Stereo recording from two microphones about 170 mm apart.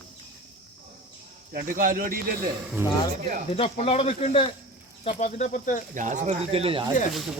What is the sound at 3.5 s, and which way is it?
Speech, 35° left (ahead or behind).